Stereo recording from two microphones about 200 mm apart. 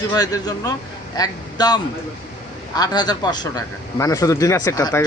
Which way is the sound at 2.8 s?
20° left (ahead or behind).